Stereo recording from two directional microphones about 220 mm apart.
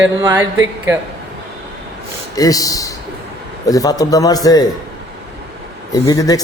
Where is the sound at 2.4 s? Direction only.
15° left (ahead or behind).